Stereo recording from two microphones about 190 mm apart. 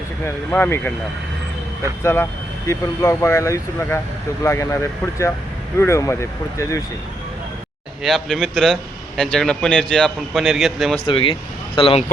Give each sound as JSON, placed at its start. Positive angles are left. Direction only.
{"t": 0.3, "sound": "speech", "side_deg": 10}
{"t": 2.6, "sound": "speech", "side_deg": 15}
{"t": 8.0, "sound": "a man's voice", "side_deg": 0}
{"t": 11.0, "sound": "speech", "side_deg": 30}